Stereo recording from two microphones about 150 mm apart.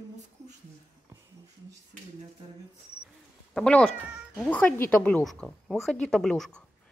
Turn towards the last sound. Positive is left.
turn(degrees=5)  # may be behind; listen again after turning